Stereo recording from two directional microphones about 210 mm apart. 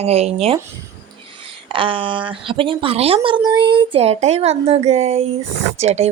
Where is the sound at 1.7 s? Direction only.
25° right (ahead or behind).